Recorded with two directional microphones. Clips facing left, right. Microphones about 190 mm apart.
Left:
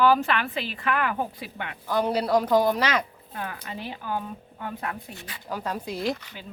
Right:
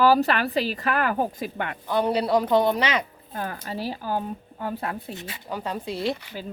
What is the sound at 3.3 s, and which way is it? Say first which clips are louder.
A woman's voice: right 4 dB; 40° right (ahead or behind).